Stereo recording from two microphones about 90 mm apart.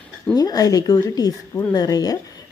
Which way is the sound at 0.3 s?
45° left (ahead or behind).